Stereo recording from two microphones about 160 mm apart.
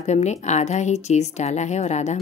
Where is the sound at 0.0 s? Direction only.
45° left (ahead or behind).